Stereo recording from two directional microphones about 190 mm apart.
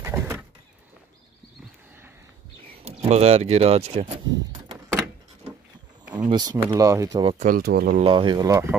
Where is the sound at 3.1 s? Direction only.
35° right (ahead or behind).